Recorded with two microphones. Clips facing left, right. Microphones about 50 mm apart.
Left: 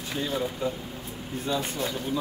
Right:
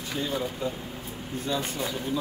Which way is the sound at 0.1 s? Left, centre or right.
Centre.